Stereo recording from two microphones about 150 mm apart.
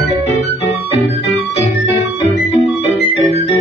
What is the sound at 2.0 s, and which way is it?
Music, 45° left (ahead or behind).